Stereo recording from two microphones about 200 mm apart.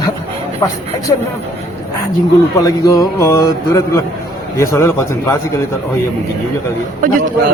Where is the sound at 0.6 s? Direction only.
15° left (ahead or behind).